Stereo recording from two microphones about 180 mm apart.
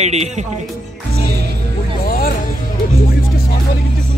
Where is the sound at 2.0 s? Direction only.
55° left (ahead or behind).